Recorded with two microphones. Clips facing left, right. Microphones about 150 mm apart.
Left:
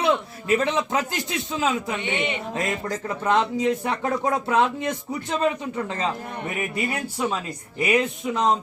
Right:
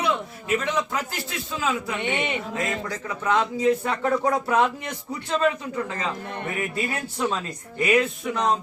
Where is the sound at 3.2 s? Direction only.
25° left (ahead or behind).